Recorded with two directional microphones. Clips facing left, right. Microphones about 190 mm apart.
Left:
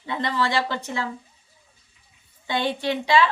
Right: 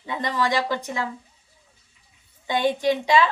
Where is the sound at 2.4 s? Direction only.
15° right (ahead or behind).